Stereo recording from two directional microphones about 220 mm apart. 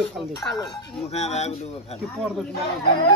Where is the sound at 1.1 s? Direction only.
30° left (ahead or behind).